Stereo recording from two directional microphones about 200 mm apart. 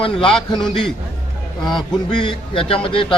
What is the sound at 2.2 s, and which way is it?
Speech, 25° left (ahead or behind).